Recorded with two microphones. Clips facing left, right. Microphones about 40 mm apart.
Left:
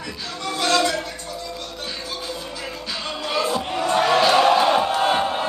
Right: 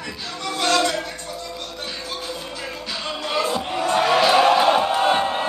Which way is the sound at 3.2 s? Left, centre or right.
Centre.